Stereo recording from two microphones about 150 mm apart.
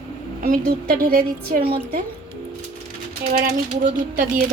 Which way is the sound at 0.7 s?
90° right.